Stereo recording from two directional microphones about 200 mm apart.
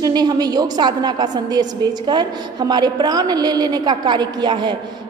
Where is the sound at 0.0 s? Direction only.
20° right (ahead or behind).